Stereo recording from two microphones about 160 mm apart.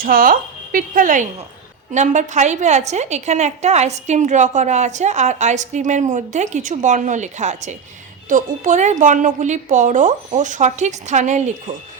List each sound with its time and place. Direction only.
0.0 s a woman's voice: 60° right (ahead or behind); by 11.5 s 45° right (ahead or behind)